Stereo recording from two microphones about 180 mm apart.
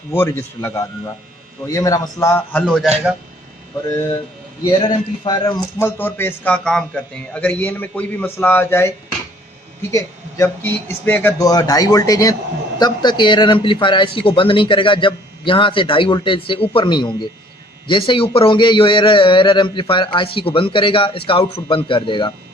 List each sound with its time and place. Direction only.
0.1 s speech: 15° left (ahead or behind)
4.6 s speech: 25° left (ahead or behind)
9.9 s speech: 15° left (ahead or behind)